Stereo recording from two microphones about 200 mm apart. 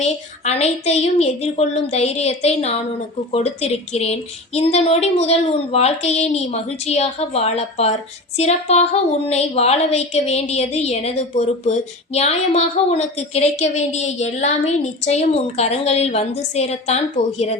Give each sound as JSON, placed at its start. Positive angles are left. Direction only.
{"t": 0.0, "sound": "a woman's voice", "side_deg": 35}